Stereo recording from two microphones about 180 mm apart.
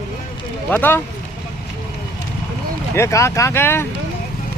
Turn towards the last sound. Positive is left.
turn(degrees=15)  # may be behind; listen again after turning